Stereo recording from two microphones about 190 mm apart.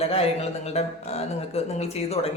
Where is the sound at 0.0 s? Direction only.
30° left (ahead or behind).